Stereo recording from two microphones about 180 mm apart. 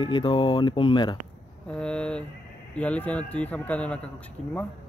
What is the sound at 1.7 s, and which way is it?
Speech, 5° left (ahead or behind).